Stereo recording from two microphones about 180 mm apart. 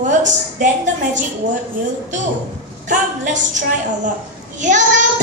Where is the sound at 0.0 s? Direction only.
40° right (ahead or behind).